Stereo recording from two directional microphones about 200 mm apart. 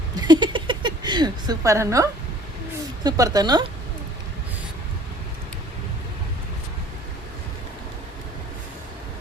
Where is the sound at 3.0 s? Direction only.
20° right (ahead or behind).